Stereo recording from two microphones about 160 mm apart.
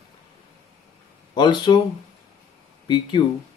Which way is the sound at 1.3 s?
30° left (ahead or behind).